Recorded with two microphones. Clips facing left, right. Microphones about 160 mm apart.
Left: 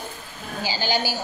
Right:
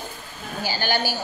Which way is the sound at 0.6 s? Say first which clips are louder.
Even; 15° left (ahead or behind).